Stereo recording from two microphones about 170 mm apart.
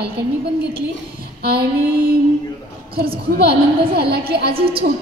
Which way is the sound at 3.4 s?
70° right (ahead or behind).